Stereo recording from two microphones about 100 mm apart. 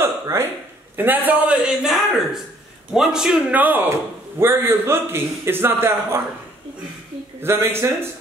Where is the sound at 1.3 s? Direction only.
10° right (ahead or behind).